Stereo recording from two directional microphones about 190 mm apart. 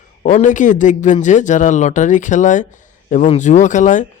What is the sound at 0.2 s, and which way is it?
A man's voice, 40° left (ahead or behind).